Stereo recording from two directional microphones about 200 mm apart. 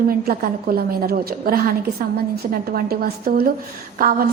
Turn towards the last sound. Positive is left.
turn(degrees=-45)  # may be behind; listen again after turning